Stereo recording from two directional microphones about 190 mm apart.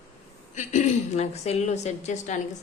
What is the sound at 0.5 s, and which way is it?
A woman's voice, 40° left (ahead or behind).